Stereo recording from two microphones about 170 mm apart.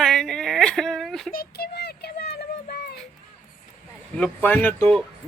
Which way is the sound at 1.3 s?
60° left (ahead or behind).